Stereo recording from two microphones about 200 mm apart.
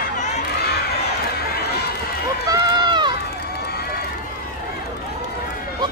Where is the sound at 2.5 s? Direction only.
20° right (ahead or behind).